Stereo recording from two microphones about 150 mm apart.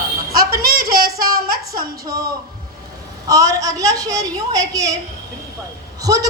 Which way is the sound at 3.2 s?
25° right (ahead or behind).